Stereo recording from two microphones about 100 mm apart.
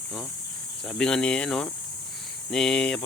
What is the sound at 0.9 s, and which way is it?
Speech, 5° left (ahead or behind).